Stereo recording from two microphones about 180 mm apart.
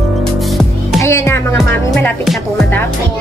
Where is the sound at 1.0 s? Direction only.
15° left (ahead or behind).